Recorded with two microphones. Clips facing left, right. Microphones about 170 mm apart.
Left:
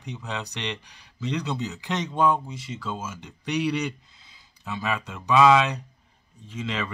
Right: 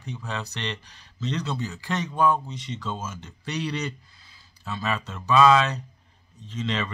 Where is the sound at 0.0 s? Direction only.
15° left (ahead or behind).